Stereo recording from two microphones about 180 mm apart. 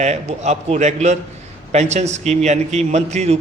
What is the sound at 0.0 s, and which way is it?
Speech, 40° right (ahead or behind).